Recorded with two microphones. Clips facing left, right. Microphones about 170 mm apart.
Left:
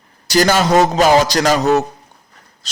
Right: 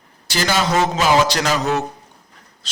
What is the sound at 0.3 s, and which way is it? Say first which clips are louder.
Speech: left 6 dB; 45° left (ahead or behind).